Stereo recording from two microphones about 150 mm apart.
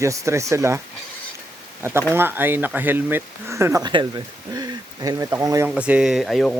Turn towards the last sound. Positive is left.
turn(degrees=0)  # may be behind; listen again after turning